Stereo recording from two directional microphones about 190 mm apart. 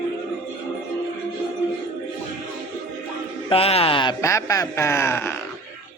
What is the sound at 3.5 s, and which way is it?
Speech, 30° left (ahead or behind).